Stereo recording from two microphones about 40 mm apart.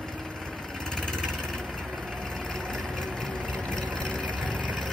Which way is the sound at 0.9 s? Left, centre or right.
Centre.